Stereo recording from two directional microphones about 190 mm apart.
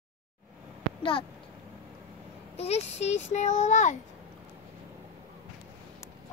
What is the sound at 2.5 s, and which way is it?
A child's voice, 35° left (ahead or behind).